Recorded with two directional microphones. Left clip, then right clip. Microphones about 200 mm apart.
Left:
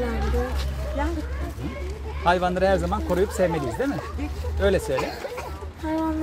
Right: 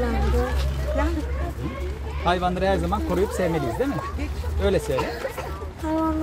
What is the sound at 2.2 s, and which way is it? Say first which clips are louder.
Speech: left 2 dB; 50° left (ahead or behind).